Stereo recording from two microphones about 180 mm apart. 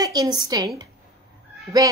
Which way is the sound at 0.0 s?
20° right (ahead or behind).